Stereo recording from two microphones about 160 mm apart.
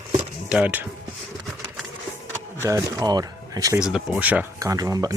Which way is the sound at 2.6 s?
20° right (ahead or behind).